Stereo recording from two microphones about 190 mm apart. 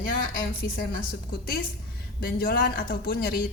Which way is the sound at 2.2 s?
55° left (ahead or behind).